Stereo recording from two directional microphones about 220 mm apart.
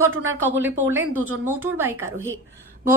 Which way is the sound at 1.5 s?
10° right (ahead or behind).